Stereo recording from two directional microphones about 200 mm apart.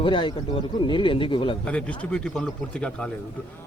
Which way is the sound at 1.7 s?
5° left (ahead or behind).